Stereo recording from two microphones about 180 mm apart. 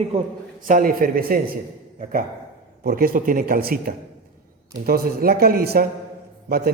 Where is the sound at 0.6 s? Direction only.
50° right (ahead or behind).